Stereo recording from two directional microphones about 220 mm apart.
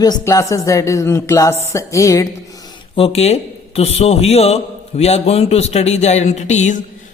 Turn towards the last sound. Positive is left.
turn(degrees=35)  # may be behind; listen again after turning